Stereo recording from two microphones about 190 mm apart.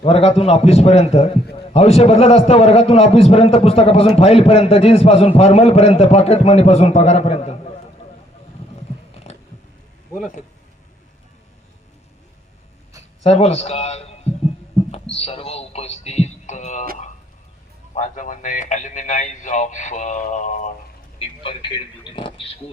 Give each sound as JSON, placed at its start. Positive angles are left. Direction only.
{"t": 0.0, "sound": "a man's voice", "side_deg": 35}
{"t": 13.2, "sound": "a man's voice", "side_deg": 35}
{"t": 14.9, "sound": "a sound", "side_deg": 30}
{"t": 17.9, "sound": "a man's voice", "side_deg": 40}
{"t": 22.1, "sound": "speech", "side_deg": 25}